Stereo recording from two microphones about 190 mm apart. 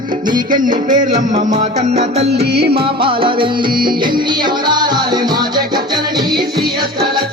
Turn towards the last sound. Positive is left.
turn(degrees=-20)  # may be behind; listen again after turning